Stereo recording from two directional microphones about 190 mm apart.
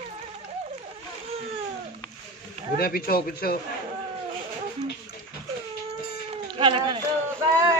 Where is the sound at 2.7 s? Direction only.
50° left (ahead or behind).